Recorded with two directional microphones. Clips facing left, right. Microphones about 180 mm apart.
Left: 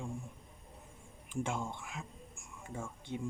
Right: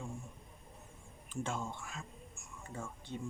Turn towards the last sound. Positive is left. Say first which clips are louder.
# left 2 dB
turn(degrees=10)  # may be behind; listen again after turning